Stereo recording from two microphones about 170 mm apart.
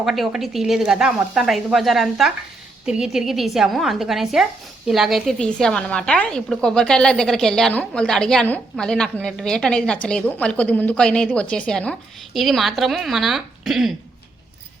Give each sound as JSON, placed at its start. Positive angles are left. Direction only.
{"t": 0.0, "sound": "a woman's voice", "side_deg": 0}